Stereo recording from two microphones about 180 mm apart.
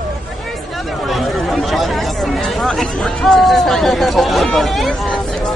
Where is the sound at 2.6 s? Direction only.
Centre (ahead or behind).